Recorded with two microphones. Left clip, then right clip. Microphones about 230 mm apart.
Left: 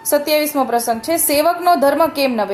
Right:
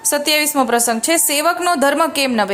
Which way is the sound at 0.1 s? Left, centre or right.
Right.